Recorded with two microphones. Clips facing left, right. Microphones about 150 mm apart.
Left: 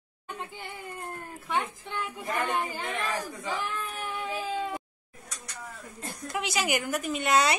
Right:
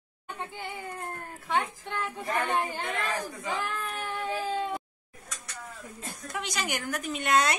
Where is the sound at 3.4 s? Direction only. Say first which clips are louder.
Even; centre (ahead or behind).